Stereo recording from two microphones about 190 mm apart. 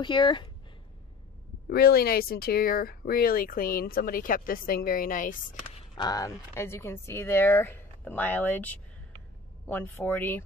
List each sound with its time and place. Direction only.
0.0 s speech: 25° left (ahead or behind)
1.7 s speech: 55° left (ahead or behind)
5.9 s speech: 20° left (ahead or behind)